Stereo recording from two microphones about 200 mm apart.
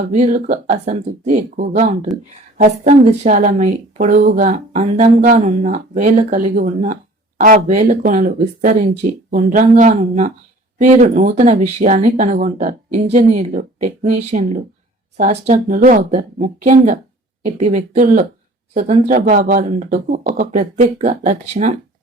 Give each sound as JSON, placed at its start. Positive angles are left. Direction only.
{"t": 0.1, "sound": "a woman's voice", "side_deg": -40}